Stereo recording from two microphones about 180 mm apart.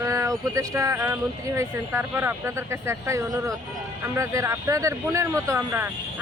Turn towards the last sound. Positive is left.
turn(degrees=-10)  # may be behind; listen again after turning